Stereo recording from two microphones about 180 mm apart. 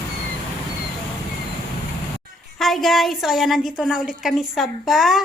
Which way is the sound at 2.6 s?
Centre (ahead or behind).